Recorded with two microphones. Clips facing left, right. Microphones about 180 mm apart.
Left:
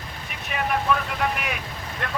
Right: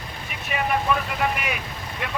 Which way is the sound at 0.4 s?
5° right (ahead or behind).